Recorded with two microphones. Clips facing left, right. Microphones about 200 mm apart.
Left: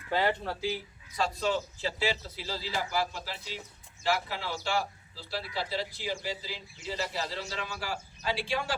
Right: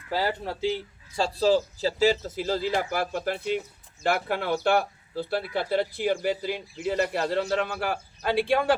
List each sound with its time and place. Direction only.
0.4 s speech: 20° right (ahead or behind); by 8.7 s 55° right (ahead or behind)